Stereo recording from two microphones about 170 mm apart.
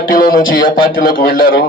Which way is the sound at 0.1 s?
55° left (ahead or behind).